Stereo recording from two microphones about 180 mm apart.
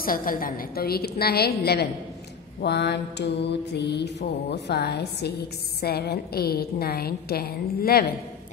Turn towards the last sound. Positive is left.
turn(degrees=55)  # may be behind; listen again after turning